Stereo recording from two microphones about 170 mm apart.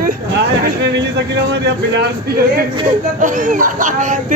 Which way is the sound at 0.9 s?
85° right.